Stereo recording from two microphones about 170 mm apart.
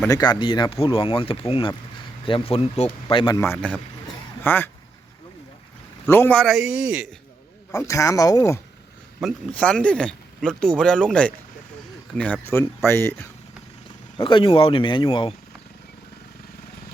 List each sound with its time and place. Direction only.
0.1 s speech: 25° left (ahead or behind)
3.3 s speech: 15° left (ahead or behind)
6.1 s speech: 10° left (ahead or behind); by 7.1 s 5° right (ahead or behind)
7.7 s speech: 20° left (ahead or behind)
9.2 s speech: 5° left (ahead or behind)
14.2 s speech: 30° left (ahead or behind)